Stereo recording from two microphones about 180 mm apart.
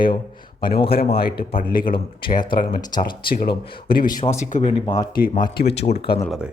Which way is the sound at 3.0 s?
50° left (ahead or behind).